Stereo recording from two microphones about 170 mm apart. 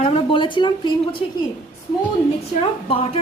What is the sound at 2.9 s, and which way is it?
Speech, 35° left (ahead or behind).